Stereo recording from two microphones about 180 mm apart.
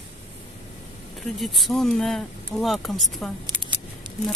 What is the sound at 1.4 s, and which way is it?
Speech, centre (ahead or behind).